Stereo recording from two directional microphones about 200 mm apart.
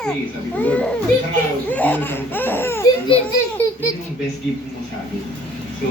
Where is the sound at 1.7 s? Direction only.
10° left (ahead or behind).